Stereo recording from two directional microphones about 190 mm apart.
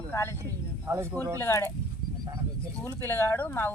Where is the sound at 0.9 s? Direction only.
15° right (ahead or behind).